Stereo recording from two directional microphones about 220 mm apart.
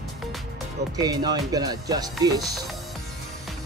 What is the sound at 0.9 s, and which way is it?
Speech, 15° right (ahead or behind).